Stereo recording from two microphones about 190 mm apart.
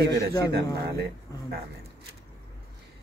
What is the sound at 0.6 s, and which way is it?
Speech, 55° right (ahead or behind).